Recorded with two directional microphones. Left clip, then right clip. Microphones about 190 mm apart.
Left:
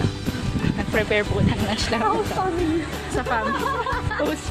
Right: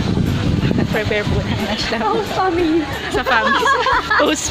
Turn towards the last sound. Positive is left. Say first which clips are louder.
# right 10 dB
turn(degrees=-40)  # may be behind; listen again after turning